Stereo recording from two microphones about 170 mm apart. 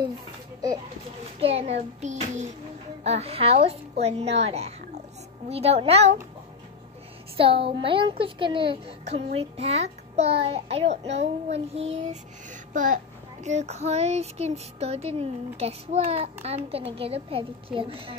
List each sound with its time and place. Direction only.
1.4 s child singing: 35° right (ahead or behind)
4.0 s a woman's voice: 40° right (ahead or behind)
5.5 s child singing: 35° right (ahead or behind)
7.3 s child singing: 30° right (ahead or behind)